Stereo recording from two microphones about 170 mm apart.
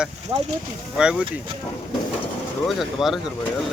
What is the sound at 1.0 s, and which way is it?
Speech, 5° right (ahead or behind).